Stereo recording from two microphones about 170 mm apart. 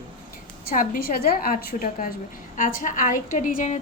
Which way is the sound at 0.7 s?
55° left (ahead or behind).